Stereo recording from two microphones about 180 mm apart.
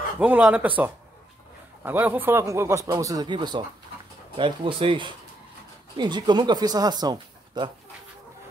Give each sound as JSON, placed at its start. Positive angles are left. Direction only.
{"t": 0.2, "sound": "a man's voice", "side_deg": -10}